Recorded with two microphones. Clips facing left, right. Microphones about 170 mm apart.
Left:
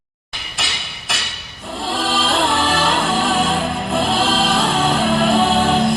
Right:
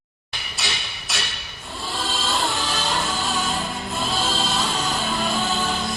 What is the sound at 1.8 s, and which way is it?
Music, 90° left.